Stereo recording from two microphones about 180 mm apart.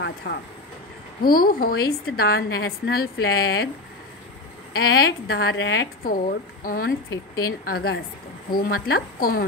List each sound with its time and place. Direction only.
0.0 s a woman's voice: 65° left (ahead or behind)
5.3 s a woman's voice: 65° left (ahead or behind)
6.0 s speech: 50° left (ahead or behind)
7.1 s speech: 20° left (ahead or behind)
7.7 s a woman's voice: 60° left (ahead or behind)